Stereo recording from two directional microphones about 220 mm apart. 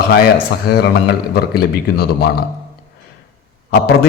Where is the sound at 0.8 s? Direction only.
45° left (ahead or behind).